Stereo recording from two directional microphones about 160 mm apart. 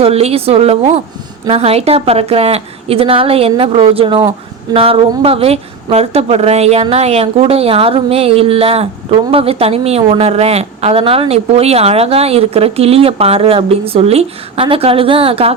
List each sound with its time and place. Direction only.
0.0 s a woman's voice: 40° right (ahead or behind)